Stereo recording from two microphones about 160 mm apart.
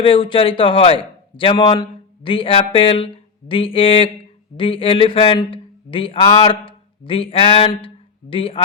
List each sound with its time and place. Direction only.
0.0 s a man's voice: 35° left (ahead or behind)